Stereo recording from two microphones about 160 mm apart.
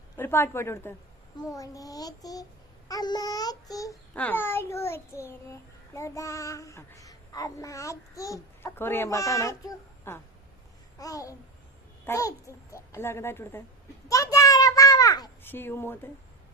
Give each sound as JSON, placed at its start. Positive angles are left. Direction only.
{"t": 0.2, "sound": "speech", "side_deg": 15}
{"t": 1.4, "sound": "child singing", "side_deg": 20}
{"t": 4.1, "sound": "child singing", "side_deg": 10}
{"t": 12.0, "sound": "a child's voice", "side_deg": 20}
{"t": 14.1, "sound": "a sound", "side_deg": 20}
{"t": 15.5, "sound": "a child's voice", "side_deg": 15}